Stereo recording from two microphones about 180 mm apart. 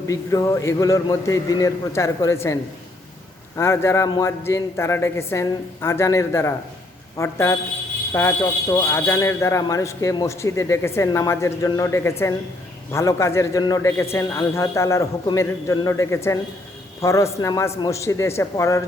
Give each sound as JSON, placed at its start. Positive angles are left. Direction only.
{"t": 0.1, "sound": "speech", "side_deg": 20}